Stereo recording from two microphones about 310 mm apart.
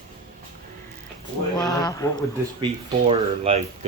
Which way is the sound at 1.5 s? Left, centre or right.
Centre.